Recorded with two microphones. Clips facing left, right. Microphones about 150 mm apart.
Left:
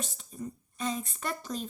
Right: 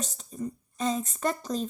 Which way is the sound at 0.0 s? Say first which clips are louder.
Right 4 dB; 35° right (ahead or behind).